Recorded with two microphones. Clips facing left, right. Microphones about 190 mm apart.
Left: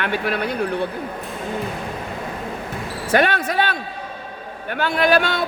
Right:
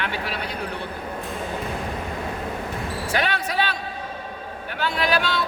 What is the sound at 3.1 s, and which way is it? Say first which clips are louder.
Basketball bounce: left 8 dB; 50° left (ahead or behind).